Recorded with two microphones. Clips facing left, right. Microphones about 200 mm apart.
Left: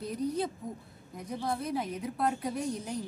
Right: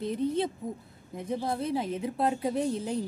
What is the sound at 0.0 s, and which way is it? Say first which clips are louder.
A woman's voice: right 4 dB; 25° right (ahead or behind).